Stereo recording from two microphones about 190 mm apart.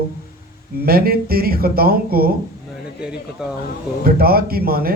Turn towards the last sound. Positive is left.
turn(degrees=-50)  # may be behind; listen again after turning